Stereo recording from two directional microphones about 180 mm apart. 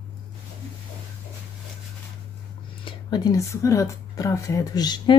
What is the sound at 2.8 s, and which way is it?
Speech, 20° left (ahead or behind).